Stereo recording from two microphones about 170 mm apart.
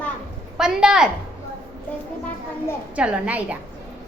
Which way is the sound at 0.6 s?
5° right (ahead or behind).